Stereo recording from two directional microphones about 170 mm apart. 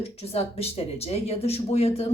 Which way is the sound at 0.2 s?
35° left (ahead or behind).